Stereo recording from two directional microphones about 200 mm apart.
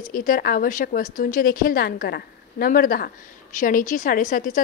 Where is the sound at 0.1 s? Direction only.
45° left (ahead or behind).